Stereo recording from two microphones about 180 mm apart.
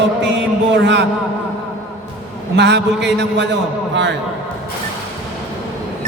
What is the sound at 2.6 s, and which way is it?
Speech, 70° right (ahead or behind).